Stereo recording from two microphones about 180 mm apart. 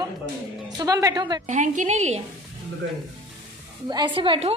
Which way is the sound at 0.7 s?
20° right (ahead or behind).